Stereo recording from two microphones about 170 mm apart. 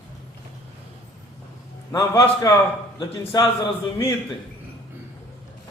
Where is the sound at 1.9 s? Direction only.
20° left (ahead or behind).